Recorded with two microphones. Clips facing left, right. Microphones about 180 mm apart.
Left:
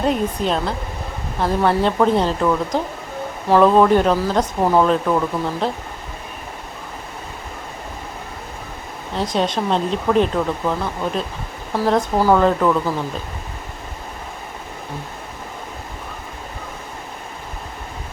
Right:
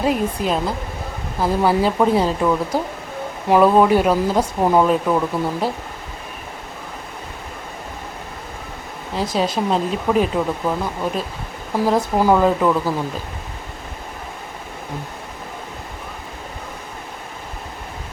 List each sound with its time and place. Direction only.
0.0 s speech: 5° right (ahead or behind)
9.1 s speech: 5° right (ahead or behind)